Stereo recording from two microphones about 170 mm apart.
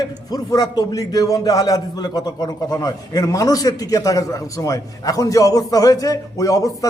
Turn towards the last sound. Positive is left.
turn(degrees=20)  # may be behind; listen again after turning